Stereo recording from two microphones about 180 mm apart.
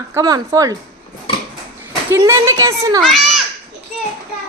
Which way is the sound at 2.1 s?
15° right (ahead or behind).